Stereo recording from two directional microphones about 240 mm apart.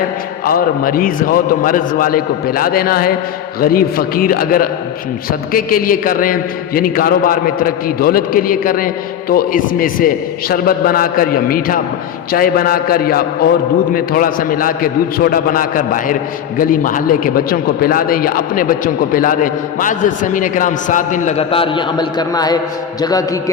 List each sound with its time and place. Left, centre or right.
0.4 s a man's voice: left; by 23.4 s centre